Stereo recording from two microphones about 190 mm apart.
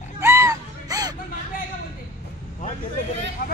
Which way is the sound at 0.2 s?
15° right (ahead or behind).